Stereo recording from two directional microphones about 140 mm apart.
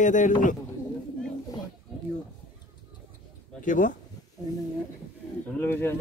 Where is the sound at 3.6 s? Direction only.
70° left (ahead or behind).